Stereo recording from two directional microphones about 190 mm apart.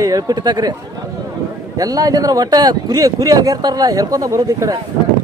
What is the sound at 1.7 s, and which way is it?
Speech, 20° right (ahead or behind).